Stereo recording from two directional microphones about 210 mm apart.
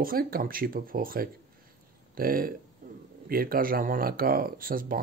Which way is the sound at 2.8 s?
40° right (ahead or behind).